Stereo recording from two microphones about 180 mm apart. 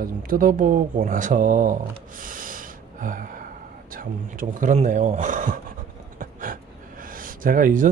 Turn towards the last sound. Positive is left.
turn(degrees=-50)  # may be behind; listen again after turning